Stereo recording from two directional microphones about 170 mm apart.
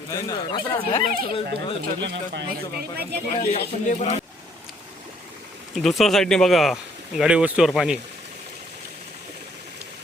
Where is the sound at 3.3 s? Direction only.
35° left (ahead or behind).